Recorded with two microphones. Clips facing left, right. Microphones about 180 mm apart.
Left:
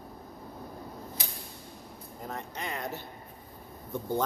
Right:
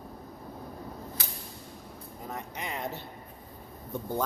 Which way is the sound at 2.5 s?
20° right (ahead or behind).